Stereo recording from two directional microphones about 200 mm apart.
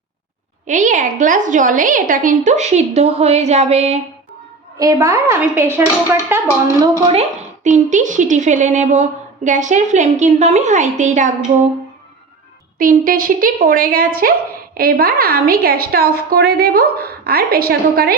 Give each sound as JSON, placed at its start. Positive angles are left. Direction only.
{"t": 0.7, "sound": "a woman's voice", "side_deg": -40}
{"t": 4.8, "sound": "speech", "side_deg": -15}
{"t": 7.1, "sound": "a woman's voice", "side_deg": -35}
{"t": 12.8, "sound": "a woman's voice", "side_deg": -45}